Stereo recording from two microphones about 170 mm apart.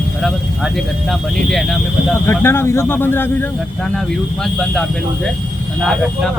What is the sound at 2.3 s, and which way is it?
Speech, 15° left (ahead or behind).